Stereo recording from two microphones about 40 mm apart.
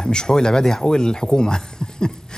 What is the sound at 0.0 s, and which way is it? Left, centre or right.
A man's voice, centre.